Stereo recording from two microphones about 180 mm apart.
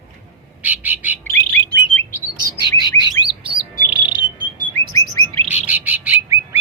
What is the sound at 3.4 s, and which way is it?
Bird, 5° right (ahead or behind).